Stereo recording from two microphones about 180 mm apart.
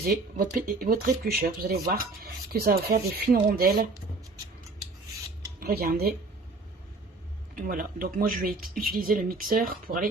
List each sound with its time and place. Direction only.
0.0 s speech: 55° right (ahead or behind)
5.5 s speech: 60° right (ahead or behind)
7.5 s speech: 50° right (ahead or behind)